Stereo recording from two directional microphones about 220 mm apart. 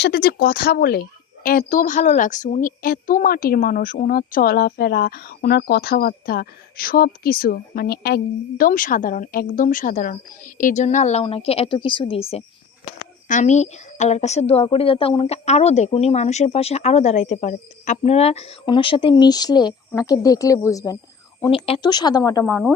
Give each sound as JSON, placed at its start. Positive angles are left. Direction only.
{"t": 0.0, "sound": "a woman's voice", "side_deg": 45}